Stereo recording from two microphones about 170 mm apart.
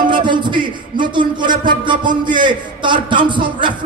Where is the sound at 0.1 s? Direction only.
30° right (ahead or behind).